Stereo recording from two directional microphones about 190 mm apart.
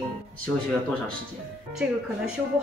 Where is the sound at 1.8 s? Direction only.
5° right (ahead or behind).